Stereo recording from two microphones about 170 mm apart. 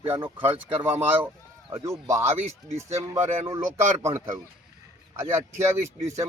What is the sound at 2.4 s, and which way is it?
Speech, 35° right (ahead or behind).